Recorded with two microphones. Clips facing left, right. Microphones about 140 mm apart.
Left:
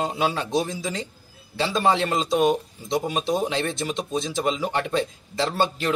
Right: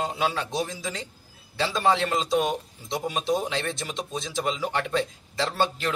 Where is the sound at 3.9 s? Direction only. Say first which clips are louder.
Left 6 dB; 5° left (ahead or behind).